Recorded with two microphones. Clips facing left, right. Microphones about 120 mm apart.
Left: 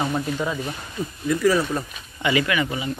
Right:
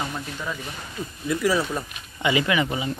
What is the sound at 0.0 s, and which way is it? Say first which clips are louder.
Speech: left 7 dB; 25° left (ahead or behind).